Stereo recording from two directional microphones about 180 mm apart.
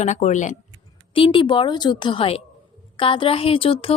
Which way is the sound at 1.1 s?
30° left (ahead or behind).